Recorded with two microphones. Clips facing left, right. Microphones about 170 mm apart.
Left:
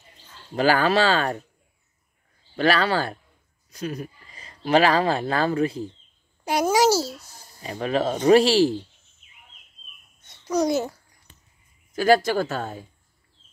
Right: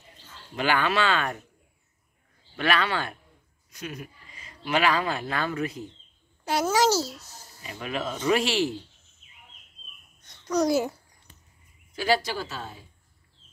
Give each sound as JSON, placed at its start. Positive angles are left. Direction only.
{"t": 0.6, "sound": "speech", "side_deg": 35}
{"t": 2.5, "sound": "speech", "side_deg": 35}
{"t": 6.4, "sound": "babbling", "side_deg": 15}
{"t": 7.6, "sound": "speech", "side_deg": 35}
{"t": 10.2, "sound": "a child's voice", "side_deg": 5}
{"t": 11.9, "sound": "speech", "side_deg": 45}